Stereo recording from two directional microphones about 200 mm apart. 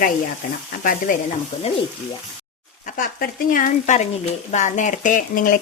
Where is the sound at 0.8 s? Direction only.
45° left (ahead or behind).